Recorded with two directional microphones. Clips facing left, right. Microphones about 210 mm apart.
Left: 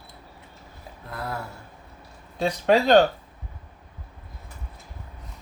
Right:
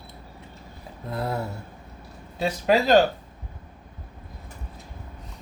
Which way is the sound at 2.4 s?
5° right (ahead or behind).